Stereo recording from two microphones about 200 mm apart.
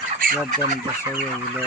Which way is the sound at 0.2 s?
45° right (ahead or behind).